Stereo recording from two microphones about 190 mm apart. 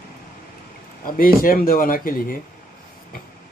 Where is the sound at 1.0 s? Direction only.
50° left (ahead or behind).